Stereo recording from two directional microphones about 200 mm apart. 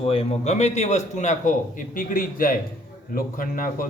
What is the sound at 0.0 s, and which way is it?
A man's voice, 30° left (ahead or behind).